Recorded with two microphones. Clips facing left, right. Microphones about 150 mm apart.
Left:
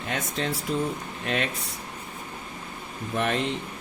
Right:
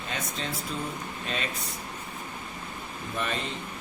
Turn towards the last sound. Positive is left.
turn(degrees=70)  # may be behind; listen again after turning